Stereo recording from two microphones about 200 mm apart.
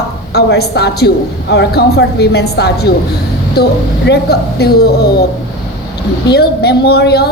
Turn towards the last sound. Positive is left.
turn(degrees=55)  # may be behind; listen again after turning